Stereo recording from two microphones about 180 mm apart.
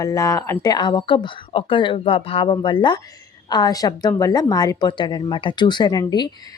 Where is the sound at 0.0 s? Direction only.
20° left (ahead or behind).